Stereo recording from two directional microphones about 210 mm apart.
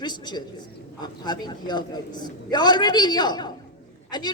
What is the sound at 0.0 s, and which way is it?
A man's voice, 20° left (ahead or behind).